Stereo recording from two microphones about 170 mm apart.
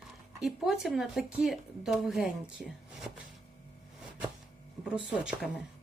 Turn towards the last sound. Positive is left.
turn(degrees=-5)  # may be behind; listen again after turning